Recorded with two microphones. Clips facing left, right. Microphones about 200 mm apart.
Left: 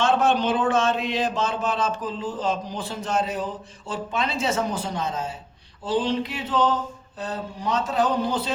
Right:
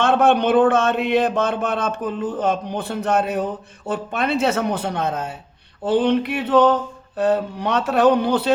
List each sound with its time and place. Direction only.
0.0 s speech: 60° right (ahead or behind)